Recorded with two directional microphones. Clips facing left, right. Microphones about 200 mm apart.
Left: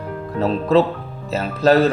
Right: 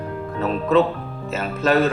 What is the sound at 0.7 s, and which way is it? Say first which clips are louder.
Speech: left 1 dB; 35° left (ahead or behind).